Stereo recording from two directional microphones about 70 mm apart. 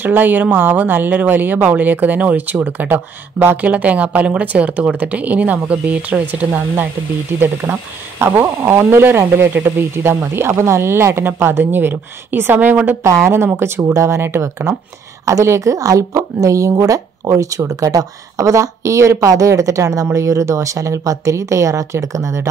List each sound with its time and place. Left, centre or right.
0.0 s speech: right
13.0 s a woman's voice: right